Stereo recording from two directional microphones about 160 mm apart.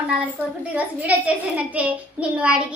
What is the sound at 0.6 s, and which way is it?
A child's voice, 10° right (ahead or behind).